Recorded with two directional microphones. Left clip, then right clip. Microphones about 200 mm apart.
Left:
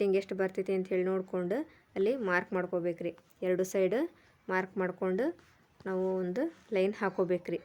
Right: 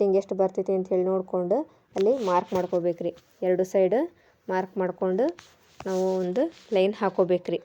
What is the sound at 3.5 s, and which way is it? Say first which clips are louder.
A woman's voice: right 7 dB; 5° right (ahead or behind).